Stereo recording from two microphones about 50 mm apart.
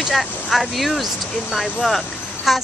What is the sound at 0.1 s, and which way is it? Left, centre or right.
Speech, centre.